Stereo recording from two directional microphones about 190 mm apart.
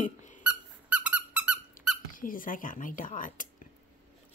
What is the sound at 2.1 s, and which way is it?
Speech, 45° left (ahead or behind).